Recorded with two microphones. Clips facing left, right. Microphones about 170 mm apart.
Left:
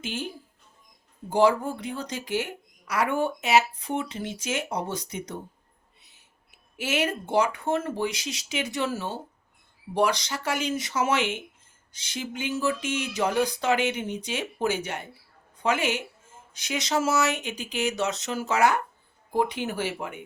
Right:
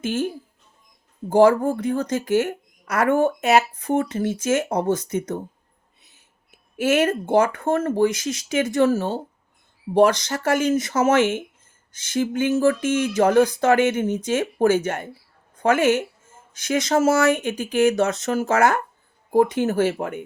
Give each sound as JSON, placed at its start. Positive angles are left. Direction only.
{"t": 0.0, "sound": "a woman's voice", "side_deg": -50}
{"t": 1.3, "sound": "a woman's voice", "side_deg": -50}
{"t": 6.7, "sound": "a woman's voice", "side_deg": -50}